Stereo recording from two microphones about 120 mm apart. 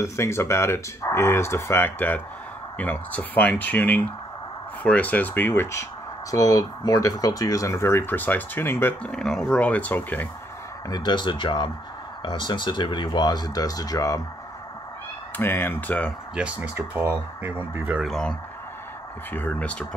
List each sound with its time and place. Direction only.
0.0 s speech: 25° left (ahead or behind)
9.0 s speech: 5° left (ahead or behind)
10.9 s speech: 35° left (ahead or behind)
15.3 s speech: 20° left (ahead or behind)
16.3 s speech: 10° right (ahead or behind)
18.0 s speech: 5° left (ahead or behind)
19.3 s speech: 15° left (ahead or behind)